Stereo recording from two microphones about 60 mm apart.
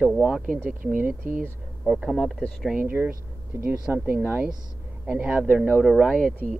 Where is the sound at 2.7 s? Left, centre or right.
Right.